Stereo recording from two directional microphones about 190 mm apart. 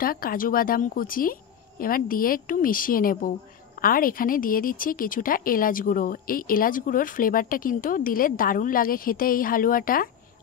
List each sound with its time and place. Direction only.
0.0 s speech: 50° left (ahead or behind)